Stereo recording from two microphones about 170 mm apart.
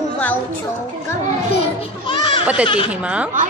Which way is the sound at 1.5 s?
35° left (ahead or behind).